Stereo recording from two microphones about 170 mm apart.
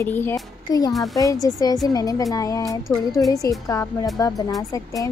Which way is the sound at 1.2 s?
20° left (ahead or behind).